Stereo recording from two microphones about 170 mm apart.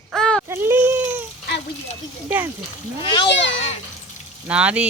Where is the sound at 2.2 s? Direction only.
10° right (ahead or behind).